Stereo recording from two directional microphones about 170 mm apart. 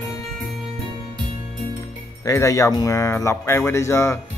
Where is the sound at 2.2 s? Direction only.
20° left (ahead or behind).